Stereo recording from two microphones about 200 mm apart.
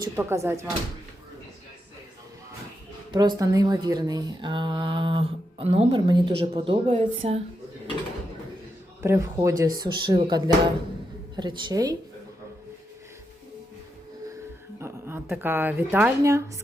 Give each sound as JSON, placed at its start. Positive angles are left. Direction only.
{"t": 0.0, "sound": "speech", "side_deg": -15}
{"t": 3.1, "sound": "a woman's voice", "side_deg": -20}
{"t": 9.0, "sound": "speech", "side_deg": -15}
{"t": 14.8, "sound": "speech", "side_deg": -10}